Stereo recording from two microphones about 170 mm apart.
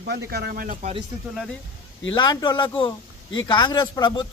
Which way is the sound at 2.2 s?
25° left (ahead or behind).